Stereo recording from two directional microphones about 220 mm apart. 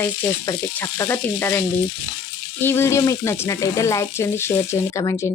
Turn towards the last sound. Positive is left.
turn(degrees=15)  # may be behind; listen again after turning